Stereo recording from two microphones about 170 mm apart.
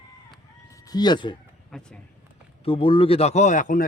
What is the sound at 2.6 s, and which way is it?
A man's voice, 30° left (ahead or behind).